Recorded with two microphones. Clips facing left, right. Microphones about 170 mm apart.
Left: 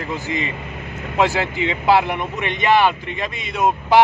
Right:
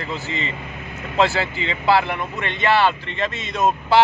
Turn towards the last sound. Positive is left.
turn(degrees=15)  # may be behind; listen again after turning